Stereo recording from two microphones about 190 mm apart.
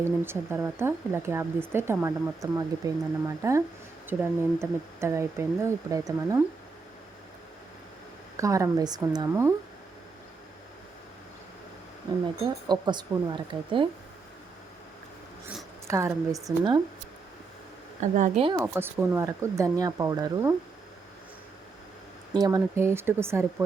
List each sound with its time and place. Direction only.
0.0 s speech: 10° right (ahead or behind)
8.4 s speech: 15° right (ahead or behind)
12.2 s speech: 25° right (ahead or behind)
15.9 s speech: 15° right (ahead or behind)
18.0 s speech: 40° right (ahead or behind)
18.4 s speech: 15° right (ahead or behind)
22.4 s speech: 20° right (ahead or behind)